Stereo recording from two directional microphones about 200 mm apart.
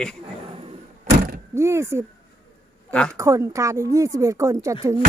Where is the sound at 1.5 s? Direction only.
15° right (ahead or behind).